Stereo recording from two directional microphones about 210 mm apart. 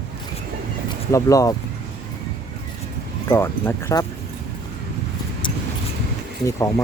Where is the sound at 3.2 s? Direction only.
10° left (ahead or behind).